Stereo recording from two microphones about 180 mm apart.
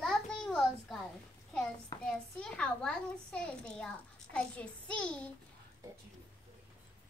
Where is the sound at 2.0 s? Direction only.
5° left (ahead or behind).